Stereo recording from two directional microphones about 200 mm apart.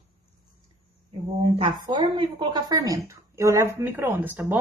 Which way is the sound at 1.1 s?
25° right (ahead or behind).